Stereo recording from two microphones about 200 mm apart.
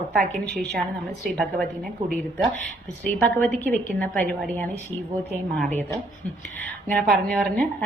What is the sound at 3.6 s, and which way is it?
Speech, 10° left (ahead or behind).